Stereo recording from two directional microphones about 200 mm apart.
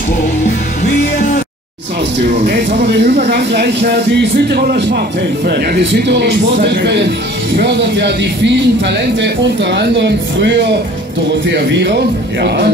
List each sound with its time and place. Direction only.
2.2 s speech: 50° right (ahead or behind)